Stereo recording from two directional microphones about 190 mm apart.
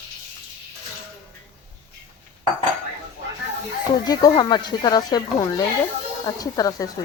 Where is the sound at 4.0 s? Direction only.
20° left (ahead or behind).